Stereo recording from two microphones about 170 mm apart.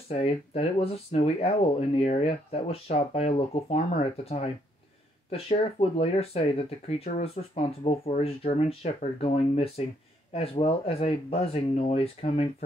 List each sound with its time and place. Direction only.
0.1 s speech: 35° left (ahead or behind)